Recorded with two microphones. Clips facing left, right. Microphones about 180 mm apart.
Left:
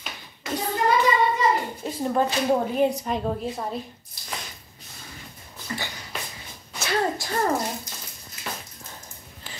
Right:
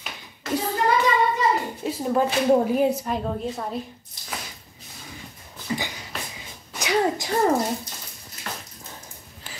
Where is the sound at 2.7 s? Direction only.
5° right (ahead or behind).